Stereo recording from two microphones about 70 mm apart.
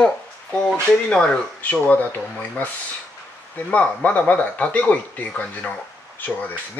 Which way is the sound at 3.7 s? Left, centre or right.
Centre.